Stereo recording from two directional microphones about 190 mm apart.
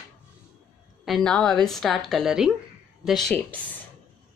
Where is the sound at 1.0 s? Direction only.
Centre (ahead or behind).